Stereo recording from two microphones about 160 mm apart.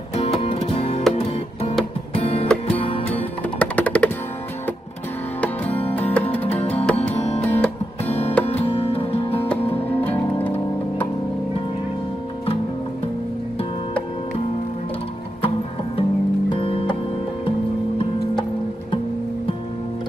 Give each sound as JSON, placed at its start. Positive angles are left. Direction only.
{"t": 0.2, "sound": "music", "side_deg": 40}
{"t": 2.4, "sound": "music", "side_deg": 10}
{"t": 2.8, "sound": "music", "side_deg": 35}
{"t": 3.4, "sound": "music", "side_deg": 10}
{"t": 5.4, "sound": "music", "side_deg": 10}
{"t": 6.4, "sound": "music", "side_deg": 40}
{"t": 10.0, "sound": "music", "side_deg": 10}
{"t": 16.0, "sound": "music", "side_deg": 35}